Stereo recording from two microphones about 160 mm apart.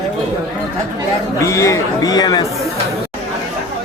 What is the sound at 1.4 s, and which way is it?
Speech, 20° left (ahead or behind).